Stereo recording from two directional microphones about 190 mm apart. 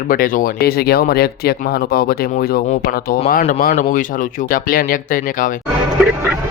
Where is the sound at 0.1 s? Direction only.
45° left (ahead or behind).